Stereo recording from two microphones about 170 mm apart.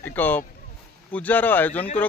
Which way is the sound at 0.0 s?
10° left (ahead or behind).